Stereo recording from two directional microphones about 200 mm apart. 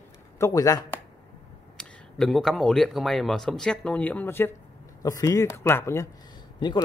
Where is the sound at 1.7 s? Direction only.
Centre (ahead or behind).